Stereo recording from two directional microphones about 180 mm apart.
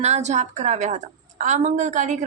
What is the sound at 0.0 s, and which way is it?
A woman's voice, 40° right (ahead or behind).